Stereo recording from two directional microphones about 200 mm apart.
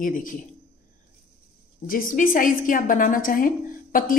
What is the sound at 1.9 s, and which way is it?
A woman's voice, 45° left (ahead or behind).